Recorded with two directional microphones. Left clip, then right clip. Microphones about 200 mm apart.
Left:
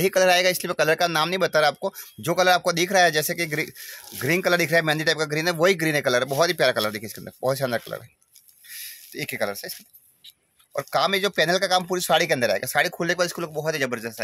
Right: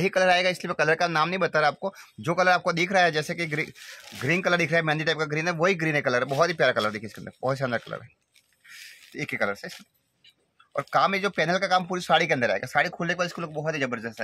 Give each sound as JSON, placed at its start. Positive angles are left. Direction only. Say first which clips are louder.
{"t": 0.0, "sound": "speech", "louder": "left 3 dB", "side_deg": 30}
{"t": 9.1, "sound": "speech", "louder": "even", "side_deg": 30}